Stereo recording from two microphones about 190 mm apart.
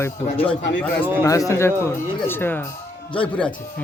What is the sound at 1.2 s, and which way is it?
Speech, 15° left (ahead or behind).